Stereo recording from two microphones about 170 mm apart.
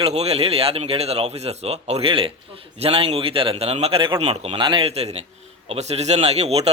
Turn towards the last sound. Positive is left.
turn(degrees=-40)  # may be behind; listen again after turning